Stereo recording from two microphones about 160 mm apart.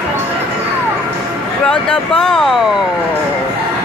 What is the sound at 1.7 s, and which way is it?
Speech, 5° left (ahead or behind).